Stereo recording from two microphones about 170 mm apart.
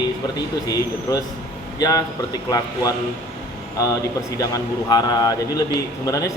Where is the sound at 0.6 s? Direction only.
20° left (ahead or behind).